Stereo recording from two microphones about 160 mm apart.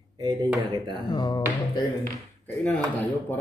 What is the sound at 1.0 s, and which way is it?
Speech, 25° left (ahead or behind).